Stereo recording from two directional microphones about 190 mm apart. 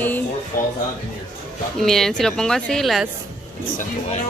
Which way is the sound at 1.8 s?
Centre (ahead or behind).